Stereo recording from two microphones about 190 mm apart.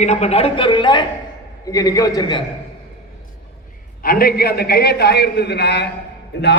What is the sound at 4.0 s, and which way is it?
A man's voice, 50° left (ahead or behind).